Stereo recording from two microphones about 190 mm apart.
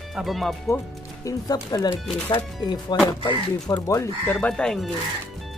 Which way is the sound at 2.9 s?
20° left (ahead or behind).